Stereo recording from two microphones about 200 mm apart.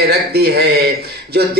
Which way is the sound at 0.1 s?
50° right (ahead or behind).